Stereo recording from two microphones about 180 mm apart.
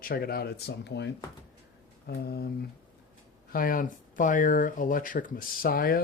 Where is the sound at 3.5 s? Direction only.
50° left (ahead or behind).